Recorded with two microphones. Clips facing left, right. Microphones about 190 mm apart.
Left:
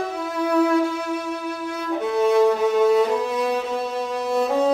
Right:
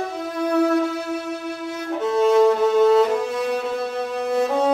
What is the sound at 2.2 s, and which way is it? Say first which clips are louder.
Music: right 2 dB; 10° left (ahead or behind).